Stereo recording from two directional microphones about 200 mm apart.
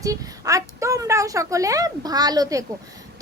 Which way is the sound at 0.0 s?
15° right (ahead or behind).